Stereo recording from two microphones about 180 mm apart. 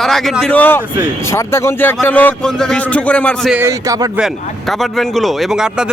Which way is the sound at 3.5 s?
15° right (ahead or behind).